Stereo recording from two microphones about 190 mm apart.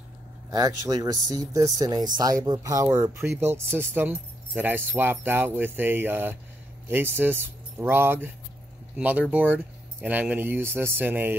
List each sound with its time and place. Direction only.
0.5 s speech: 20° right (ahead or behind)